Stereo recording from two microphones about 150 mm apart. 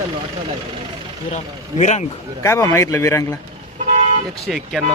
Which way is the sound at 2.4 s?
20° left (ahead or behind).